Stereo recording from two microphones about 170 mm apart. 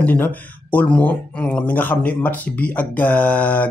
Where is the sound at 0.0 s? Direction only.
10° left (ahead or behind).